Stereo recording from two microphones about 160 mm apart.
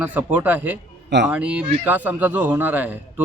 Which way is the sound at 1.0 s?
90° right.